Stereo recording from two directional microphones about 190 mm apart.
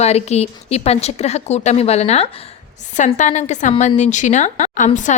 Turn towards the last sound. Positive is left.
turn(degrees=40)  # may be behind; listen again after turning